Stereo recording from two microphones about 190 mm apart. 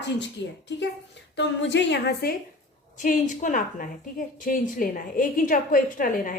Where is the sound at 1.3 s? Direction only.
65° left (ahead or behind).